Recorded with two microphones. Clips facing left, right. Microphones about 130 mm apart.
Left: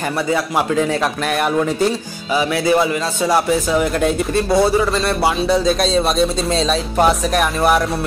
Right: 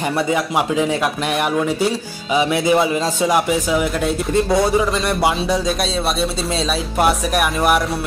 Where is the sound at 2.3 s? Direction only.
20° right (ahead or behind); by 4.1 s 5° right (ahead or behind).